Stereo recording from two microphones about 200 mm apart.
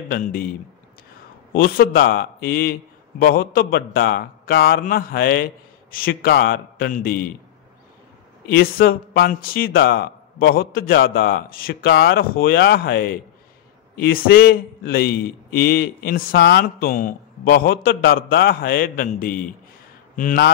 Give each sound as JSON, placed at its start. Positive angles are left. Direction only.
{"t": 0.1, "sound": "a man's voice", "side_deg": 45}
{"t": 1.5, "sound": "a man's voice", "side_deg": 45}
{"t": 8.5, "sound": "a man's voice", "side_deg": 50}